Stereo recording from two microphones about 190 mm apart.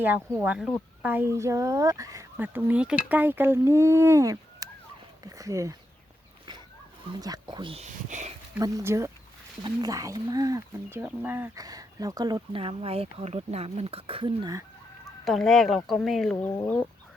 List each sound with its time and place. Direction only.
0.0 s speech: 10° right (ahead or behind)
7.2 s speech: 20° right (ahead or behind); by 8.3 s 40° right (ahead or behind)
8.5 s speech: 15° right (ahead or behind)
15.2 s speech: centre (ahead or behind)